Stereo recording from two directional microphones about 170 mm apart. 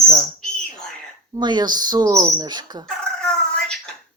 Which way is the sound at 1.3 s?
25° right (ahead or behind).